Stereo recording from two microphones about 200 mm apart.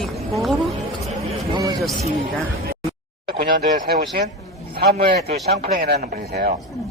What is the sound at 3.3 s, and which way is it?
Speech, 50° right (ahead or behind).